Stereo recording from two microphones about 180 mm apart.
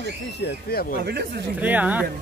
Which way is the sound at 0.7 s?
60° left (ahead or behind).